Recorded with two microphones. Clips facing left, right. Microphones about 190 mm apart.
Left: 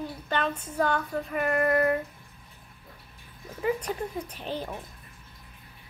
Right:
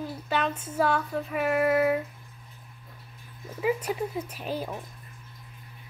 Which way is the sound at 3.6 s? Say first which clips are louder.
Right 1 dB; 5° right (ahead or behind).